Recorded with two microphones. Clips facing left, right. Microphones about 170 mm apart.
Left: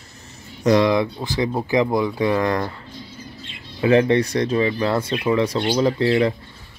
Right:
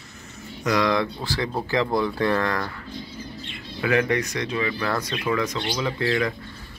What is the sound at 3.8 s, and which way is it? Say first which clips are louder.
Speech: left 6 dB; 30° left (ahead or behind).